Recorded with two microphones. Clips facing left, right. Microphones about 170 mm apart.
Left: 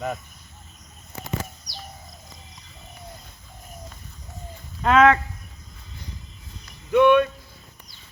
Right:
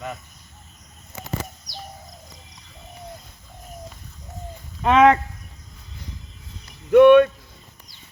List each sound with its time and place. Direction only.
4.8 s speech: 15° right (ahead or behind)
6.9 s speech: 60° right (ahead or behind)